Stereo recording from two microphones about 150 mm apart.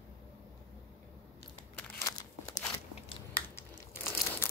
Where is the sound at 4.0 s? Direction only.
15° left (ahead or behind).